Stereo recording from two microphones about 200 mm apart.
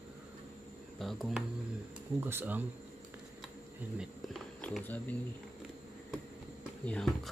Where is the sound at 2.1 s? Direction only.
10° right (ahead or behind).